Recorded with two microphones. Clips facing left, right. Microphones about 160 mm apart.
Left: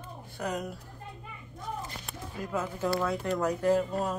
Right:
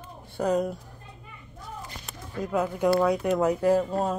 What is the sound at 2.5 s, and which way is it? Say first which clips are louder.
Speech: right 7 dB; 15° right (ahead or behind).